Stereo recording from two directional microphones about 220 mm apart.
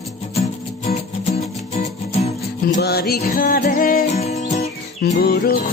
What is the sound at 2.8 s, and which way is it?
Music, 45° left (ahead or behind).